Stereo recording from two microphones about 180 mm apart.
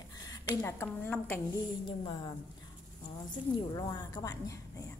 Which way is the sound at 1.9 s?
25° left (ahead or behind).